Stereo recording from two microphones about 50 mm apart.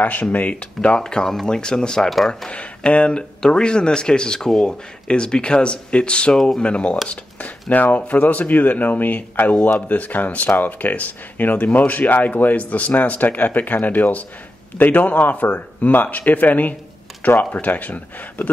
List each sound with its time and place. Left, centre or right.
0.0 s speech: left
0.7 s speech: centre
2.0 s speech: centre
2.5 s speech: left
9.6 s speech: left